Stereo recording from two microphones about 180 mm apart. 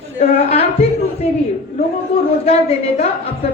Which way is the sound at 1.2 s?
35° left (ahead or behind).